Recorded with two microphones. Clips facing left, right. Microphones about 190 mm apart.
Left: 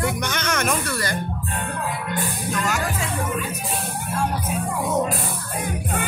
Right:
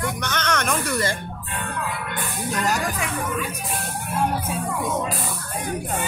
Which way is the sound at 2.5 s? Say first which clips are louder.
Right 2 dB; 35° right (ahead or behind).